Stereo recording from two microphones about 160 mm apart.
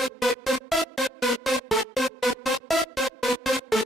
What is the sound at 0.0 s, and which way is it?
Music, centre (ahead or behind).